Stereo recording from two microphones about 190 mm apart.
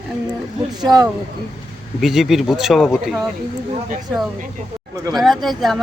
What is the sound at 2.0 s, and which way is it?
Speech, centre (ahead or behind).